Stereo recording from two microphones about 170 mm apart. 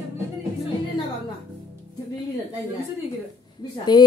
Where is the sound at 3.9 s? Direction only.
25° left (ahead or behind).